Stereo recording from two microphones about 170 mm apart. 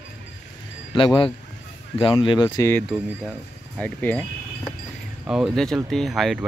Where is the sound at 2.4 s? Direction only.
15° left (ahead or behind).